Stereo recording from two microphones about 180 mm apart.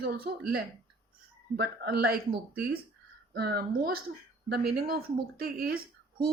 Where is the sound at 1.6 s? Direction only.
60° right (ahead or behind).